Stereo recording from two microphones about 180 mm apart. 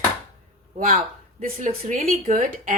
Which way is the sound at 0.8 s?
50° right (ahead or behind).